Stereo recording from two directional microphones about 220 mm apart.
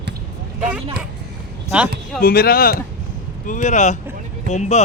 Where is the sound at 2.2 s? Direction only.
40° left (ahead or behind).